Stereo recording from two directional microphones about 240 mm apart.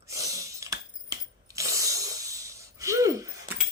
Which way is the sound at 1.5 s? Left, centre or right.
Centre.